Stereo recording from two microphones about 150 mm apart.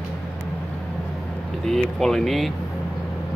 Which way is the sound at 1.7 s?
Centre (ahead or behind).